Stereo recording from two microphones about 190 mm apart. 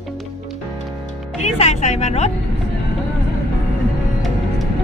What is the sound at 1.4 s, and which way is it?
Speech, 35° left (ahead or behind).